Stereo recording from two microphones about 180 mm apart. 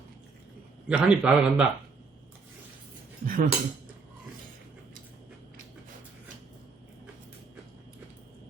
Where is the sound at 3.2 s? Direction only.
50° right (ahead or behind).